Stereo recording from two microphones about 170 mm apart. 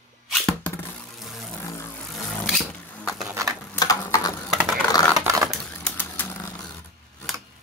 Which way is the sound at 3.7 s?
20° left (ahead or behind).